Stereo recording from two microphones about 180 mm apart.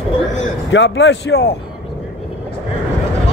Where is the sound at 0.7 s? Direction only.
85° left; by 1.5 s 65° left (ahead or behind).